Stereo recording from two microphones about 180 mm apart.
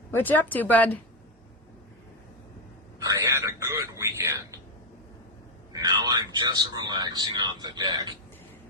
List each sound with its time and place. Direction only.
0.1 s speech: 10° left (ahead or behind)
3.0 s a sound: 20° right (ahead or behind)
5.7 s a man's voice: 20° right (ahead or behind)